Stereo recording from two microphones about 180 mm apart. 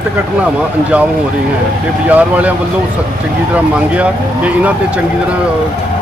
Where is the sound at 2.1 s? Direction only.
10° right (ahead or behind).